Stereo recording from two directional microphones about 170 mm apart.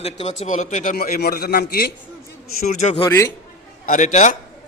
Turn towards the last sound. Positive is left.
turn(degrees=45)  # may be behind; listen again after turning